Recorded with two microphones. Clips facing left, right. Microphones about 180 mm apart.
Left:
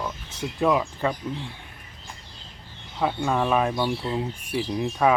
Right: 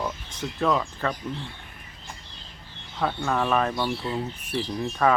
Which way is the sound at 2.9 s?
10° left (ahead or behind).